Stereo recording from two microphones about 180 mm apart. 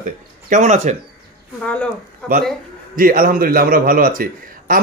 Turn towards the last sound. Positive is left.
turn(degrees=-50)  # may be behind; listen again after turning